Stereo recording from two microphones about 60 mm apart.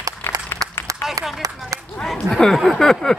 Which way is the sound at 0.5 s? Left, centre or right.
Left.